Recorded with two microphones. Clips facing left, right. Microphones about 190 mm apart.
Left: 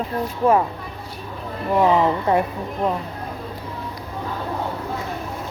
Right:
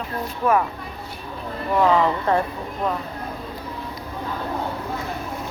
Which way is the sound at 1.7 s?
20° left (ahead or behind).